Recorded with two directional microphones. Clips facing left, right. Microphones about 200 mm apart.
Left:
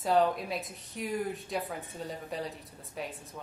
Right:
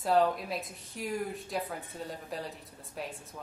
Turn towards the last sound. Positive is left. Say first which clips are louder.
# left 1 dB
turn(degrees=0)  # may be behind; listen again after turning